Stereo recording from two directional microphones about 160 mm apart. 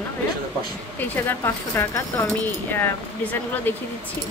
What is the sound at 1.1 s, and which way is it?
Speech, 15° left (ahead or behind).